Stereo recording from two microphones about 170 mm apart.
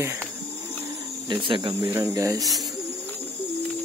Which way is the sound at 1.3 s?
30° right (ahead or behind).